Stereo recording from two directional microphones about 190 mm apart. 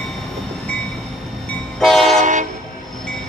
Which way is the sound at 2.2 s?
40° right (ahead or behind).